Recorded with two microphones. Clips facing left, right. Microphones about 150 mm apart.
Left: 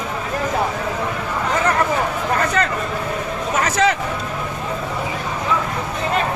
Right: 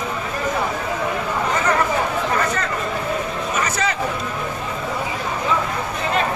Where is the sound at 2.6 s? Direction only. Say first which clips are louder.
Left 5 dB; 70° left (ahead or behind).